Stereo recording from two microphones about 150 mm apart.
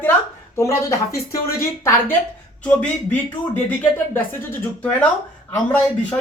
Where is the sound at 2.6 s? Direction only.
10° left (ahead or behind).